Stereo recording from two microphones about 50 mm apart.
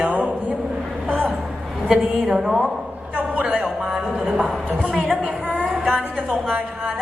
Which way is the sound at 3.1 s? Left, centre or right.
Right.